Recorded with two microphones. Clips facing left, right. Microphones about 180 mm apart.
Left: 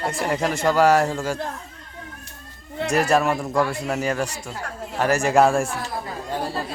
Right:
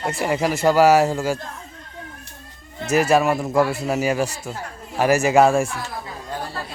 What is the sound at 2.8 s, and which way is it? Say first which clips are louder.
A man's voice: right 2 dB; 5° right (ahead or behind).